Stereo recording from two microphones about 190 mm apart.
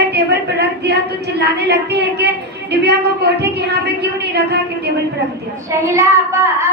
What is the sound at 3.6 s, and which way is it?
A woman's voice, 60° right (ahead or behind).